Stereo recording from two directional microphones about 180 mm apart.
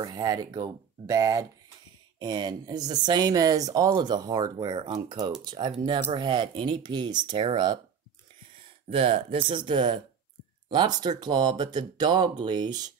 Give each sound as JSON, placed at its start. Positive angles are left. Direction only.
{"t": 0.0, "sound": "speech", "side_deg": -20}
{"t": 8.9, "sound": "speech", "side_deg": -30}